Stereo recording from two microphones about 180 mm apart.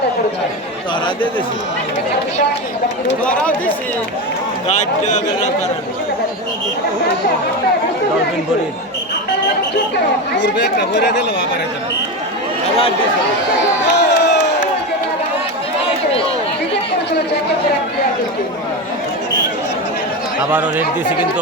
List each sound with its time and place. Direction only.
4.7 s a man's voice: 40° left (ahead or behind)
10.3 s speech: 70° left (ahead or behind)
13.8 s crowd: 70° left (ahead or behind)
20.5 s speech: 10° right (ahead or behind)